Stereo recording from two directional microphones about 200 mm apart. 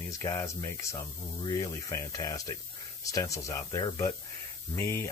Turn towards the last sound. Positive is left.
turn(degrees=10)  # may be behind; listen again after turning